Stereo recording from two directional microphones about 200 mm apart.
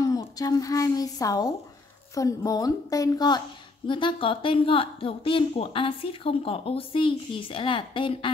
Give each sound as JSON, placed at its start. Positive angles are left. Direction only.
{"t": 0.0, "sound": "a woman's voice", "side_deg": 20}